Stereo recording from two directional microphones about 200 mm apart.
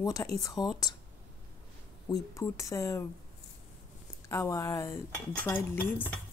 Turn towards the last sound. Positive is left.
turn(degrees=10)  # may be behind; listen again after turning